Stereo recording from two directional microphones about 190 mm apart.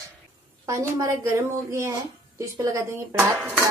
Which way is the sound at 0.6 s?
15° right (ahead or behind).